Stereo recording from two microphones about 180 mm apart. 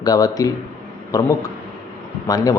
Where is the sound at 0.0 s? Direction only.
20° left (ahead or behind).